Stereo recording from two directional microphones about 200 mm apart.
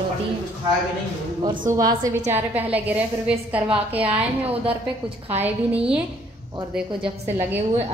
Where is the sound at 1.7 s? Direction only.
15° right (ahead or behind).